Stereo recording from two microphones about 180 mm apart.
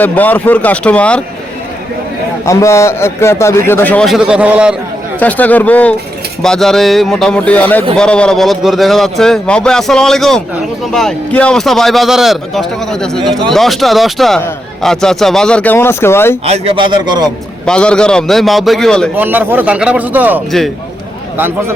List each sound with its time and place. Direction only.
0.0 s speech: 10° left (ahead or behind)
2.4 s speech: 15° left (ahead or behind); by 4.8 s 5° right (ahead or behind)
5.2 s speech: 10° left (ahead or behind)
16.5 s a man's voice: 30° right (ahead or behind)
17.7 s speech: 5° left (ahead or behind)
19.1 s a man's voice: 10° right (ahead or behind)